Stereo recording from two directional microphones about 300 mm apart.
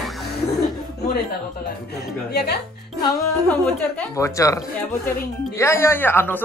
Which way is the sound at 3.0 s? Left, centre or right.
Centre.